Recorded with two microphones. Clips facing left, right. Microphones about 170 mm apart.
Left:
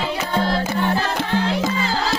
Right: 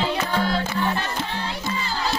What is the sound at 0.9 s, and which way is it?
Music, 90° left.